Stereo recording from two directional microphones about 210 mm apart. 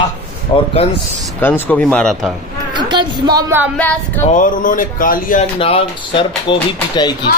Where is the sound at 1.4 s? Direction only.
10° left (ahead or behind).